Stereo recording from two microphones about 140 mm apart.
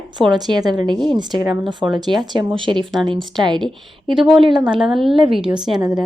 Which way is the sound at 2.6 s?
35° right (ahead or behind).